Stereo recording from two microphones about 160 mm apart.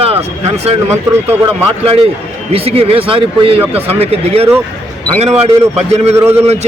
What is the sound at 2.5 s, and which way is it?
Speech, 35° right (ahead or behind).